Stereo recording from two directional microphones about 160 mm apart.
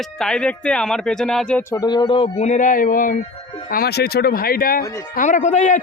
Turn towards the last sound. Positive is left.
turn(degrees=50)  # may be behind; listen again after turning